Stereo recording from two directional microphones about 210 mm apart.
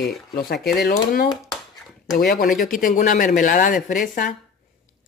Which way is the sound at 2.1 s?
45° left (ahead or behind).